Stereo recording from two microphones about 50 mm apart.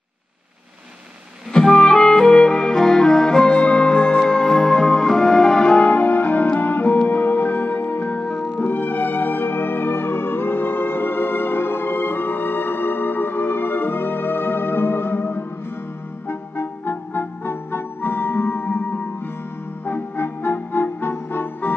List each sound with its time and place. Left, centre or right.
1.5 s music: centre
5.9 s music: left